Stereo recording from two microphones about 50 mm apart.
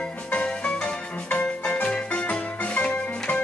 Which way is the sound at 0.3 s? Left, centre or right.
Left.